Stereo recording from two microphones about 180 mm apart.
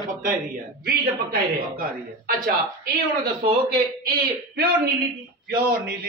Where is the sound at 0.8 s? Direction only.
55° right (ahead or behind).